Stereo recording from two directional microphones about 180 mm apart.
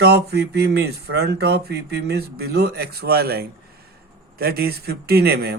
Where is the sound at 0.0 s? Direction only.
65° right (ahead or behind).